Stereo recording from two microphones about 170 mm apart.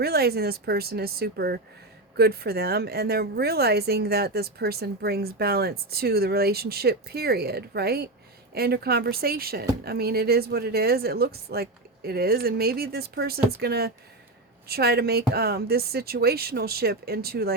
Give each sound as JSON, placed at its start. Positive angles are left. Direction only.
{"t": 0.0, "sound": "a woman's voice", "side_deg": -65}